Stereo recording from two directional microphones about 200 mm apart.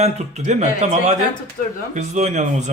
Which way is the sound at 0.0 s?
35° right (ahead or behind).